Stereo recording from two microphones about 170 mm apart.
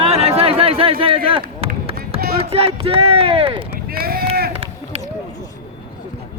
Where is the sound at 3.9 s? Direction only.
60° right (ahead or behind).